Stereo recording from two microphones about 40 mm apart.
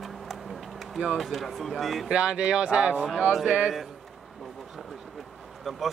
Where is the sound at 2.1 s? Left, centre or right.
Right.